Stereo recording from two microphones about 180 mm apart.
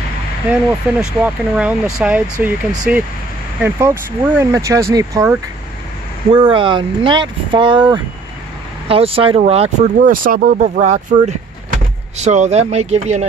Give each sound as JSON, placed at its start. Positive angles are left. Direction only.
{"t": 0.5, "sound": "speech", "side_deg": -5}
{"t": 6.3, "sound": "speech", "side_deg": -30}
{"t": 9.9, "sound": "speech", "side_deg": -50}